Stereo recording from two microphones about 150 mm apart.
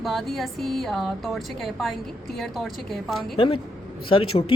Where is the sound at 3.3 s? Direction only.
35° left (ahead or behind).